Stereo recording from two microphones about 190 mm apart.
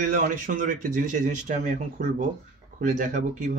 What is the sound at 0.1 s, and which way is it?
Speech, 45° right (ahead or behind).